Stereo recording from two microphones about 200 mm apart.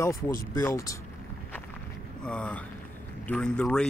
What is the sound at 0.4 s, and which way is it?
Speech, 15° left (ahead or behind).